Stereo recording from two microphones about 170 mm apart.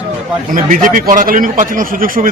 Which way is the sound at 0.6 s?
55° right (ahead or behind).